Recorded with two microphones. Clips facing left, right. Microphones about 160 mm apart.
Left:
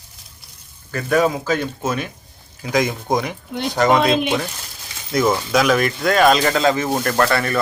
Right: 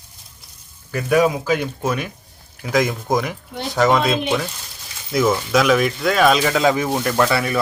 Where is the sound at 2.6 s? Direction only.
Centre (ahead or behind).